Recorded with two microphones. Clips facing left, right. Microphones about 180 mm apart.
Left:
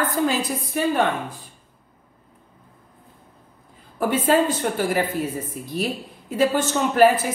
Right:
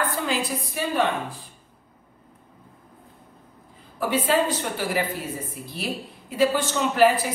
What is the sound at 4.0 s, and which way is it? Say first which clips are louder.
Speech: left 3 dB; 50° left (ahead or behind).